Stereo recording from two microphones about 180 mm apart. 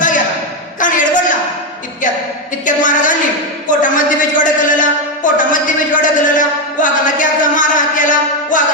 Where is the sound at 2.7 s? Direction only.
45° left (ahead or behind).